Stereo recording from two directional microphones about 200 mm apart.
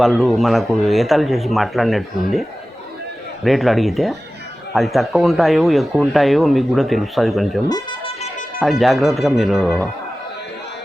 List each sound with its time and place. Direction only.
0.0 s speech: centre (ahead or behind)
3.4 s speech: centre (ahead or behind)